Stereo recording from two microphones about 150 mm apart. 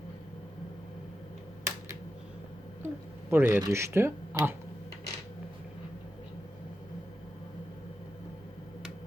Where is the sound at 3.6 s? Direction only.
20° right (ahead or behind).